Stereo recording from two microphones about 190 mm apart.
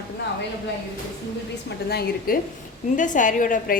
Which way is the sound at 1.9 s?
50° left (ahead or behind).